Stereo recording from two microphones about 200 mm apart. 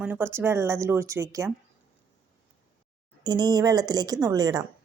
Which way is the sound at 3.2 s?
20° right (ahead or behind).